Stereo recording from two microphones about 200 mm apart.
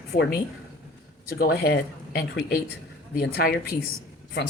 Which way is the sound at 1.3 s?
50° left (ahead or behind).